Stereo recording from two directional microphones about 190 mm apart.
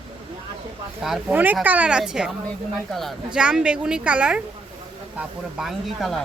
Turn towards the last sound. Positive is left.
turn(degrees=0)  # may be behind; listen again after turning